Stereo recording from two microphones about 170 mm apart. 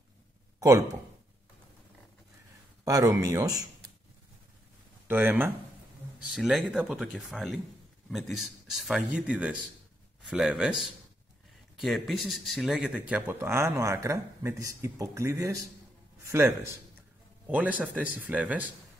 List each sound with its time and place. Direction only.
0.6 s speech: 20° right (ahead or behind)
2.8 s speech: 20° right (ahead or behind)
5.0 s speech: 10° right (ahead or behind)